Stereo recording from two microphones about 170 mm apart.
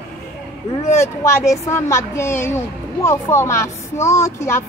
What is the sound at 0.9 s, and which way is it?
Speech, 15° left (ahead or behind).